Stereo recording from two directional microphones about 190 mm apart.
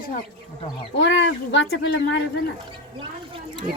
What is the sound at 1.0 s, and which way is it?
Speech, 75° left (ahead or behind).